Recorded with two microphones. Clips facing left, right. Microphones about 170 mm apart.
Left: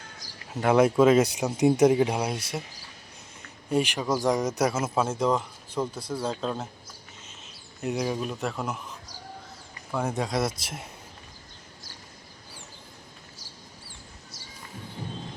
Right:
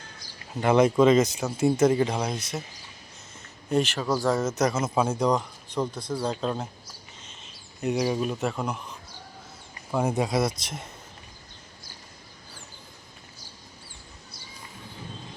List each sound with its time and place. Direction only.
0.5 s speech: 5° left (ahead or behind)
3.7 s speech: 10° left (ahead or behind)
9.9 s speech: 10° right (ahead or behind); by 10.8 s 5° left (ahead or behind)
14.3 s a sound: 90° left